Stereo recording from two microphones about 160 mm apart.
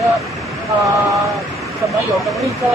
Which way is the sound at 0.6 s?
20° right (ahead or behind).